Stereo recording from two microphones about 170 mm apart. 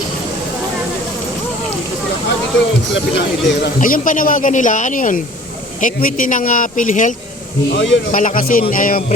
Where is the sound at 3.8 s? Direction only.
55° left (ahead or behind).